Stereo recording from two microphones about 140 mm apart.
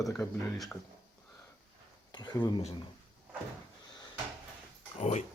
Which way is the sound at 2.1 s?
30° left (ahead or behind).